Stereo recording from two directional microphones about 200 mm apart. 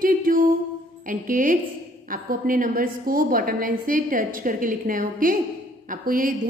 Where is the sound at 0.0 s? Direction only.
45° right (ahead or behind).